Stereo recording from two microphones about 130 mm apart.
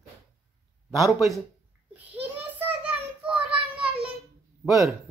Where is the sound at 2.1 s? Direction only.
15° right (ahead or behind).